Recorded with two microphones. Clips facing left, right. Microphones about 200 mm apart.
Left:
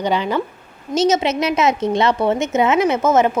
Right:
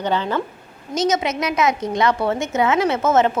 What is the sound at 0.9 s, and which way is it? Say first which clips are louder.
A woman's voice: left 4 dB; 25° left (ahead or behind).